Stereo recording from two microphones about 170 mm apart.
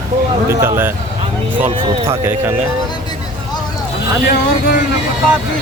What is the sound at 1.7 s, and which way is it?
Speech, 35° right (ahead or behind).